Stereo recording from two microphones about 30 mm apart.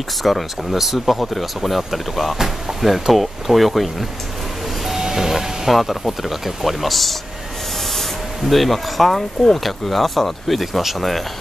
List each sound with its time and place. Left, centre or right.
0.2 s speech: centre
2.3 s speech: centre
4.8 s vehicle: centre
5.7 s speech: centre
8.5 s speech: centre